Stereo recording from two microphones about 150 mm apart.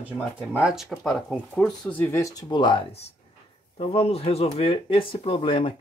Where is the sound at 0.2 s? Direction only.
10° right (ahead or behind).